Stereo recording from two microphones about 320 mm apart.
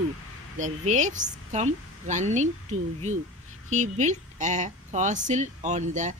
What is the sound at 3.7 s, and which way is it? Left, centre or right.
A woman's voice, right.